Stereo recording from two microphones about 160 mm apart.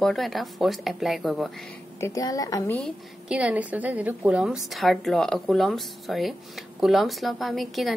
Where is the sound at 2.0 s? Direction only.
20° left (ahead or behind).